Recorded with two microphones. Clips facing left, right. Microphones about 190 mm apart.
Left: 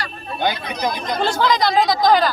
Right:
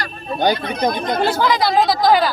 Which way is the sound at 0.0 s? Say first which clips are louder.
Right 4 dB; 45° right (ahead or behind).